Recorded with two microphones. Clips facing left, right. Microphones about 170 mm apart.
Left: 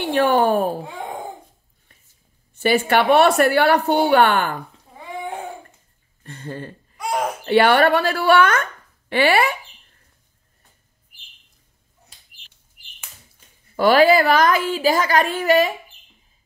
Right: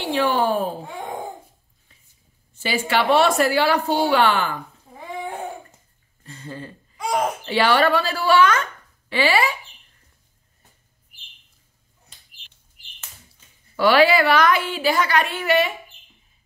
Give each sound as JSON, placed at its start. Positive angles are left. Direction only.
{"t": 0.0, "sound": "a woman's voice", "side_deg": 55}
{"t": 2.5, "sound": "a woman's voice", "side_deg": 55}
{"t": 6.2, "sound": "a woman's voice", "side_deg": 55}
{"t": 13.7, "sound": "a woman's voice", "side_deg": 45}